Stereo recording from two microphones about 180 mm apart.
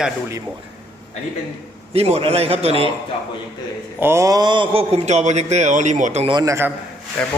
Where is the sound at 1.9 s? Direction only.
35° right (ahead or behind).